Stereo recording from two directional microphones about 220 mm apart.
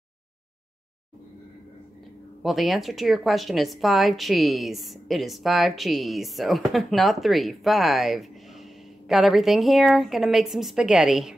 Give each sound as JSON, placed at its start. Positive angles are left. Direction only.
{"t": 2.4, "sound": "speech", "side_deg": 0}